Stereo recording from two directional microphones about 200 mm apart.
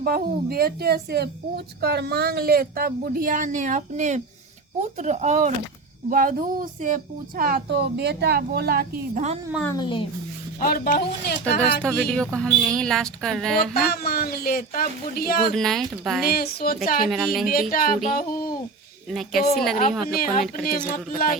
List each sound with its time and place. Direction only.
0.0 s speech: 45° right (ahead or behind)
9.6 s a child's voice: 20° left (ahead or behind)
10.6 s speech: 45° left (ahead or behind)
11.8 s speech: 5° left (ahead or behind)
13.7 s speech: 50° left (ahead or behind)
15.5 s speech: centre (ahead or behind)
16.2 s speech: 50° left (ahead or behind)
19.1 s speech: centre (ahead or behind)
20.1 s speech: 45° left (ahead or behind)